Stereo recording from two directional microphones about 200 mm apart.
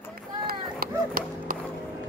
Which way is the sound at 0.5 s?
45° right (ahead or behind).